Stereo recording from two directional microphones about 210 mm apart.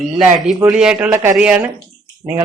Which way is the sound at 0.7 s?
5° right (ahead or behind).